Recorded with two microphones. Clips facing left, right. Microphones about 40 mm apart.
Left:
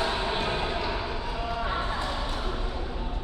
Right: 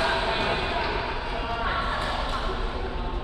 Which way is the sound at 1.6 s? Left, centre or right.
Right.